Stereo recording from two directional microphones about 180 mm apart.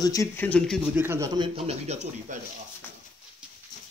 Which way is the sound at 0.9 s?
15° right (ahead or behind).